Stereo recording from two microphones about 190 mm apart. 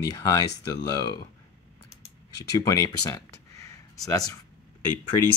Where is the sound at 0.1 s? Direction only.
20° left (ahead or behind).